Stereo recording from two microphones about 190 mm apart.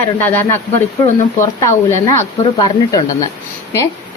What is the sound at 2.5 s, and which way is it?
Speech, 20° left (ahead or behind).